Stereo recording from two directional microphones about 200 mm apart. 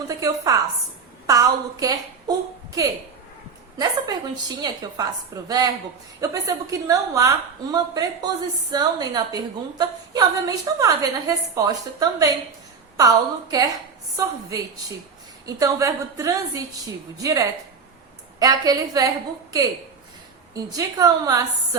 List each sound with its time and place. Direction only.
0.1 s a woman's voice: 15° right (ahead or behind)
3.8 s a woman's voice: 20° right (ahead or behind)
20.5 s a woman's voice: 15° right (ahead or behind)